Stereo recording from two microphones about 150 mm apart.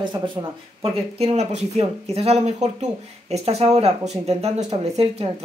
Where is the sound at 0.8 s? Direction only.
40° right (ahead or behind).